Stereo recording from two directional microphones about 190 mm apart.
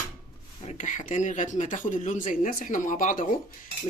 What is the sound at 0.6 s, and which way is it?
Speech, 40° left (ahead or behind).